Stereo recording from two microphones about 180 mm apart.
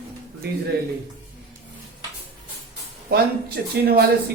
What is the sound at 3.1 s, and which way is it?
Speech, 65° right (ahead or behind).